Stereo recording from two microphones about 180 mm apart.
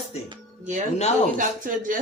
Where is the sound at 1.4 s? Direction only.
45° right (ahead or behind).